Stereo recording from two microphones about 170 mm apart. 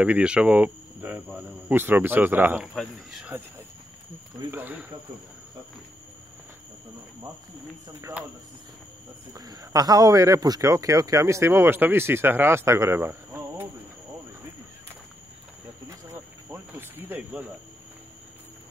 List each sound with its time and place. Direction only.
0.0 s speech: 5° right (ahead or behind)
2.7 s speech: centre (ahead or behind)
4.5 s speech: 10° right (ahead or behind)
8.0 s speech: 10° right (ahead or behind)
9.3 s speech: 20° right (ahead or behind)
16.4 s speech: 10° right (ahead or behind)